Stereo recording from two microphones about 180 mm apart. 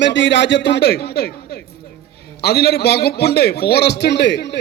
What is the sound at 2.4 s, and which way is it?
A man's voice, 65° left (ahead or behind).